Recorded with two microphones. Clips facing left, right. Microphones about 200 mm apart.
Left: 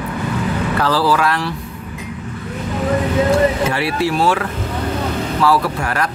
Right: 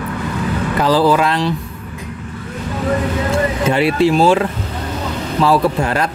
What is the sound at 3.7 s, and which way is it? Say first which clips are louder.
Speech: right 5 dB; 20° right (ahead or behind).